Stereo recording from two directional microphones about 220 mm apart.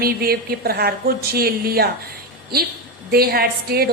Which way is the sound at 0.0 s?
45° right (ahead or behind).